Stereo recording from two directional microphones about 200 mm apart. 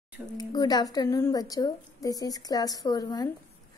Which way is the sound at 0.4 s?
20° left (ahead or behind).